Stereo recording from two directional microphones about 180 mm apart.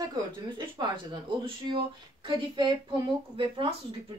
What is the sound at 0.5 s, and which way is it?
A woman's voice, 25° right (ahead or behind).